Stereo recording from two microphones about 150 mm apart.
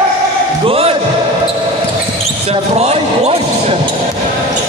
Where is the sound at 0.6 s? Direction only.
40° right (ahead or behind).